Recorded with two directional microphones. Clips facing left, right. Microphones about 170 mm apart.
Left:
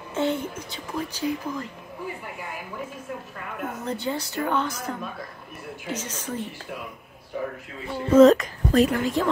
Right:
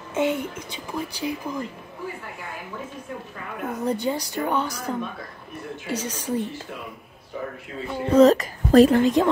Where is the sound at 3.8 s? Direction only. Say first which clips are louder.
Right 5 dB; 15° right (ahead or behind).